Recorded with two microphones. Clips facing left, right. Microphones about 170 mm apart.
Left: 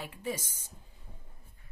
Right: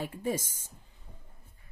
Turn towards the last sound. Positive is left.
turn(degrees=-45)  # may be behind; listen again after turning